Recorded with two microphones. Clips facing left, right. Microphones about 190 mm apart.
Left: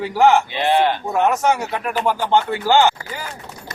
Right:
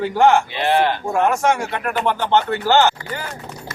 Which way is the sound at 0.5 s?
15° left (ahead or behind).